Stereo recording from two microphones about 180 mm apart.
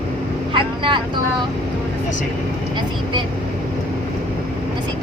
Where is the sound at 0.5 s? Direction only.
25° right (ahead or behind).